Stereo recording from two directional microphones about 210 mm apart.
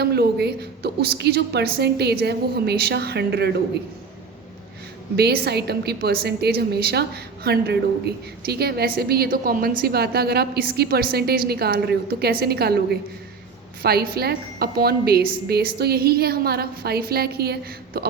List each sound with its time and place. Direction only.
0.0 s a woman's voice: 50° right (ahead or behind)
5.1 s a woman's voice: 50° right (ahead or behind)